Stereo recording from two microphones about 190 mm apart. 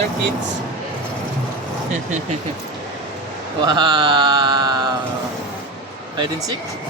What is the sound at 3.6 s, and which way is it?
Speech, 20° right (ahead or behind).